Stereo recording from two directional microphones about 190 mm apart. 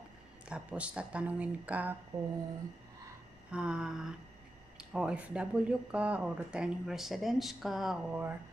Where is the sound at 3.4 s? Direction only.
5° right (ahead or behind).